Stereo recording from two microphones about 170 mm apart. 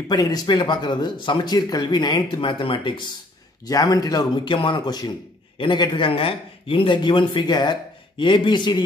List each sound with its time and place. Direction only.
0.1 s speech: 25° left (ahead or behind)